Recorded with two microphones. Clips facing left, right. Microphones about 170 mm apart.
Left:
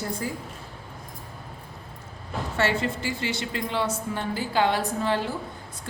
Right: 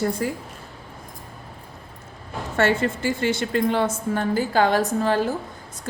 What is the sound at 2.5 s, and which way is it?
A woman's voice, 50° right (ahead or behind).